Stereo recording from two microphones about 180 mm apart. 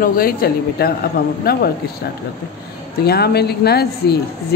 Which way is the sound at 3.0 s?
60° left (ahead or behind).